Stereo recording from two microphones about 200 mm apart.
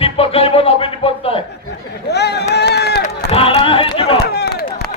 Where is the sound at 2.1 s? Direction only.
55° left (ahead or behind).